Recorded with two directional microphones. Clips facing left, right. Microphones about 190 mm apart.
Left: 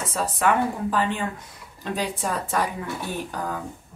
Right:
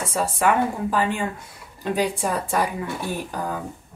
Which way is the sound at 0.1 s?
10° right (ahead or behind).